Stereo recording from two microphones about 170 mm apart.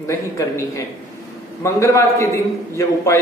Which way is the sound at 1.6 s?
15° left (ahead or behind).